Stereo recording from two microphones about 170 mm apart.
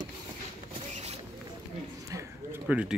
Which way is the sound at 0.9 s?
40° right (ahead or behind).